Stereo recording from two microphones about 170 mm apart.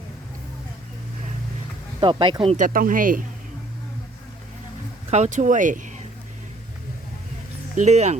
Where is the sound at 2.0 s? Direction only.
30° right (ahead or behind).